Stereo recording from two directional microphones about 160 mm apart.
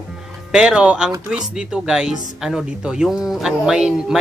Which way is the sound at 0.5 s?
5° right (ahead or behind).